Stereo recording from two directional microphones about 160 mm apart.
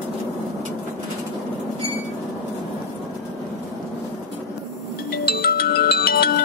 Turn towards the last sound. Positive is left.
turn(degrees=70)  # may be behind; listen again after turning